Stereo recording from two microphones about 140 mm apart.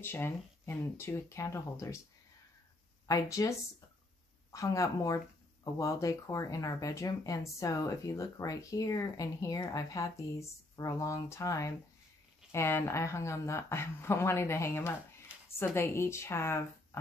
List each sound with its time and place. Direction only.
0.0 s speech: 15° left (ahead or behind)
3.1 s speech: 25° left (ahead or behind)